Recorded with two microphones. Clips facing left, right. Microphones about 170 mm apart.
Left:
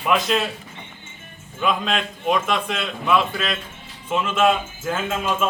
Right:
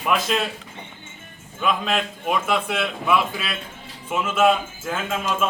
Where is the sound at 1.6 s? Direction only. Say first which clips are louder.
Even; 5° right (ahead or behind).